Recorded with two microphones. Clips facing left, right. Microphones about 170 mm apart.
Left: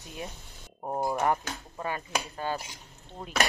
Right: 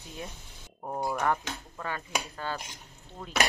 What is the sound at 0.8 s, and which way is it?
Speech, 20° left (ahead or behind).